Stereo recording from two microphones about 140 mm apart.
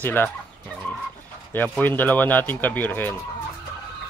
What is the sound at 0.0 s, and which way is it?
Speech, 15° left (ahead or behind).